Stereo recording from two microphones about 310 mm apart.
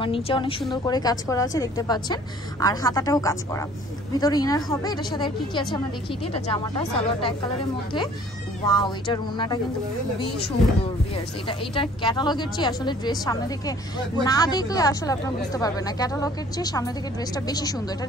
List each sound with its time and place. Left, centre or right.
0.0 s a woman's voice: centre
8.6 s a woman's voice: centre
11.4 s a woman's voice: centre